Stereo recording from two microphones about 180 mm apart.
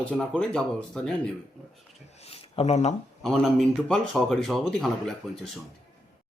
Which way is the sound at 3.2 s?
Centre (ahead or behind).